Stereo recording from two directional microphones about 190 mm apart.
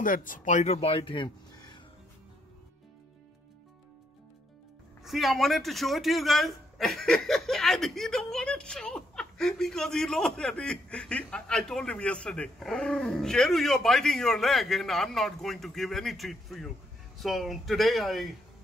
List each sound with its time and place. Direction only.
0.0 s speech: 45° left (ahead or behind); by 1.8 s 25° left (ahead or behind)
5.0 s a man's voice: centre (ahead or behind)